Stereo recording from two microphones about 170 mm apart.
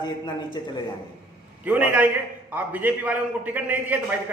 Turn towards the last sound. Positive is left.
turn(degrees=-10)  # may be behind; listen again after turning